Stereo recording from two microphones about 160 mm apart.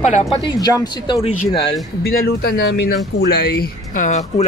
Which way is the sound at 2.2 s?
80° left.